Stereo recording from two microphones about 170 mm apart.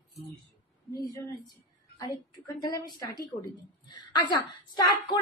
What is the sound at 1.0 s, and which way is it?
A woman's voice, 15° left (ahead or behind).